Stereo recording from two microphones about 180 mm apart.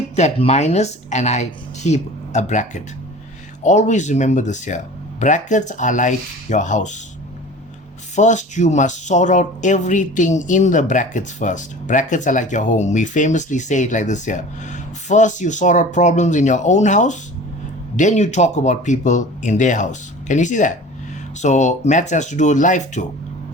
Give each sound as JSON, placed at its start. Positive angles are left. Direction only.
{"t": 0.2, "sound": "speech", "side_deg": 35}
{"t": 8.1, "sound": "speech", "side_deg": 40}